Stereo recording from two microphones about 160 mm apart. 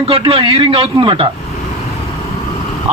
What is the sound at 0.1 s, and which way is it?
Speech, 35° right (ahead or behind).